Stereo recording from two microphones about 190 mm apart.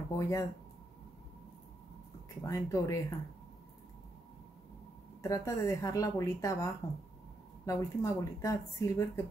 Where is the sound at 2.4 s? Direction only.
15° left (ahead or behind).